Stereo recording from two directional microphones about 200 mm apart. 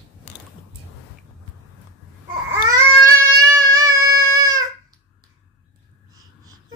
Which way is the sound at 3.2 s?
15° right (ahead or behind).